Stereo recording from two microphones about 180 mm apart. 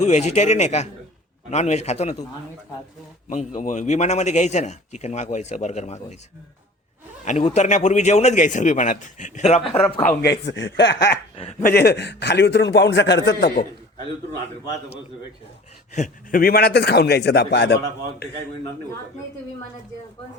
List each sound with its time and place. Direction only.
0.0 s a man's voice: 40° left (ahead or behind)
3.2 s a man's voice: 45° left (ahead or behind)
7.3 s a man's voice: 40° left (ahead or behind)
10.0 s a man's voice: 55° left (ahead or behind); by 11.2 s 70° left (ahead or behind)
11.6 s a man's voice: 60° left (ahead or behind); by 13.5 s 85° left
16.0 s a man's voice: 55° left (ahead or behind)